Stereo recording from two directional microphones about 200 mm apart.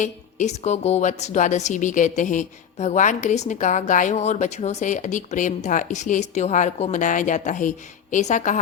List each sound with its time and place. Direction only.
0.0 s a woman's voice: 35° left (ahead or behind)